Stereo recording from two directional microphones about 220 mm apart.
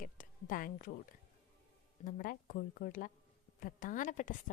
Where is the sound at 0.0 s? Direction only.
40° left (ahead or behind).